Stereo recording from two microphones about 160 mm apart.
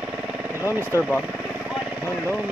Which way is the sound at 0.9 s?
15° right (ahead or behind).